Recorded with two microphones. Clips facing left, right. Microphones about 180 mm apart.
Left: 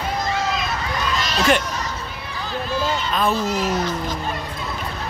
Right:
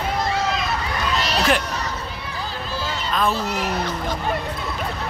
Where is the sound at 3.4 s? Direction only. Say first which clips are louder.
Left 3 dB; 60° right (ahead or behind).